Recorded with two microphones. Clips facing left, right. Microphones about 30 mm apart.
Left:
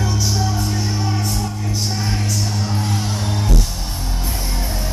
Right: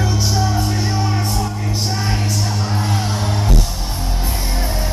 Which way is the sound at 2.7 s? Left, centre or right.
Centre.